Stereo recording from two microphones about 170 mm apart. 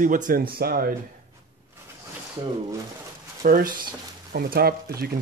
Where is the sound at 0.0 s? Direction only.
50° right (ahead or behind).